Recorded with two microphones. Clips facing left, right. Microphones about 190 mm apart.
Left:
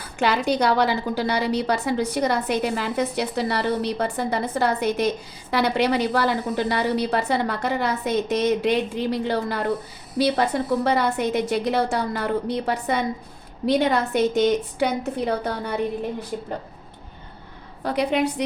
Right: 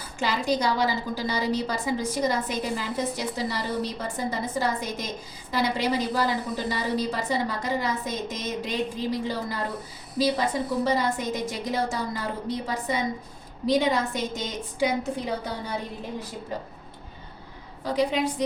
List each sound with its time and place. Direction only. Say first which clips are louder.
0.0 s a woman's voice: left 6 dB; 65° left (ahead or behind)
17.8 s a woman's voice: left 3 dB; 65° left (ahead or behind)